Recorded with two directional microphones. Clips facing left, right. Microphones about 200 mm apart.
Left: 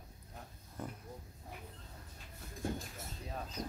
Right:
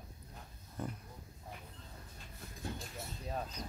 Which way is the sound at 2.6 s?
50° left (ahead or behind).